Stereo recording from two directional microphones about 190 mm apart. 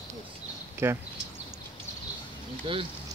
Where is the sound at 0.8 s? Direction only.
15° right (ahead or behind).